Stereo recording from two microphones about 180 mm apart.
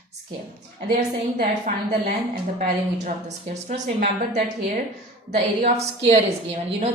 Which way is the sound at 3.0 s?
40° right (ahead or behind).